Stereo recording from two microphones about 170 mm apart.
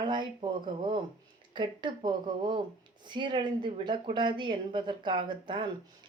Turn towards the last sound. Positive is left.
turn(degrees=-30)  # may be behind; listen again after turning